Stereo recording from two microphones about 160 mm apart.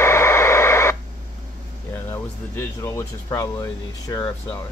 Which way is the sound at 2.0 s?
15° left (ahead or behind).